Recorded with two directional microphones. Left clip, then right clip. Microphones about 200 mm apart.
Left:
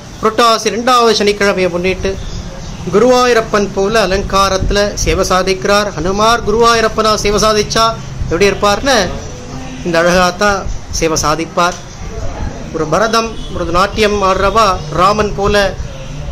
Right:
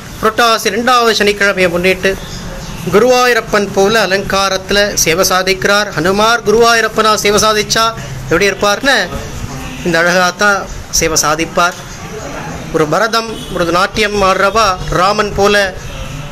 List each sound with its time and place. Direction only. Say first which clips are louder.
0.2 s a man's voice: even; 10° left (ahead or behind)
12.7 s a man's voice: right 1 dB; 10° right (ahead or behind)